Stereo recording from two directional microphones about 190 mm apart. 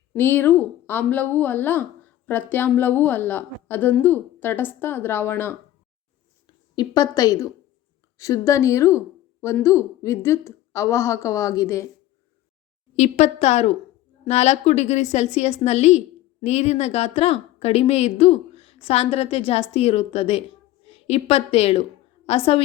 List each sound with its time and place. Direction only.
0.1 s a woman's voice: 10° left (ahead or behind)
6.7 s a woman's voice: 20° left (ahead or behind)
13.0 s a woman's voice: 35° left (ahead or behind)